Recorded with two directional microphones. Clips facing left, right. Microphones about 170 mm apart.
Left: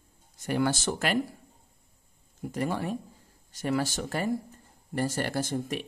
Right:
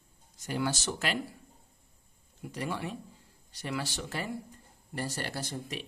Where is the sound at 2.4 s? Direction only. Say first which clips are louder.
Left 5 dB; 45° left (ahead or behind).